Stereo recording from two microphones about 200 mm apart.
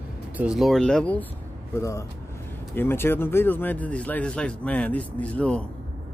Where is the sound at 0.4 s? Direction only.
5° right (ahead or behind).